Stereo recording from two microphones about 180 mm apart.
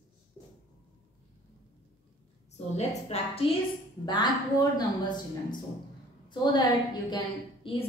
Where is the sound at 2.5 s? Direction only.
40° left (ahead or behind).